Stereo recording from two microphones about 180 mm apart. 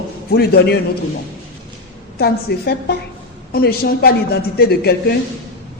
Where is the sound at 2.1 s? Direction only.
65° left (ahead or behind).